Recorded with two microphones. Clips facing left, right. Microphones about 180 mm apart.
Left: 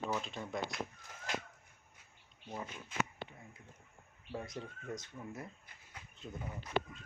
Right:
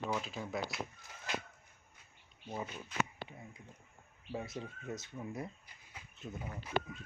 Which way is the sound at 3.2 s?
25° left (ahead or behind).